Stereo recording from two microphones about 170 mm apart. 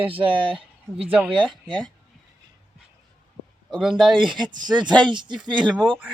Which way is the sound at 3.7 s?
5° right (ahead or behind).